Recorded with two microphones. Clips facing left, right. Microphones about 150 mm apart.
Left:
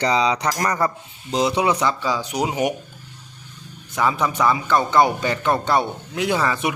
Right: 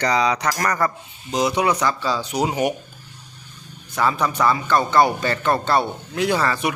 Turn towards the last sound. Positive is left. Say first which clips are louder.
# right 1 dB
turn(degrees=20)  # may be behind; listen again after turning